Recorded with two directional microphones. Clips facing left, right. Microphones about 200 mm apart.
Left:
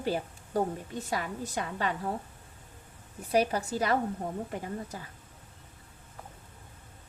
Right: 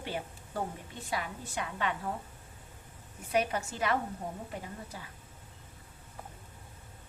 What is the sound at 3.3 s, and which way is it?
Speech, 35° left (ahead or behind).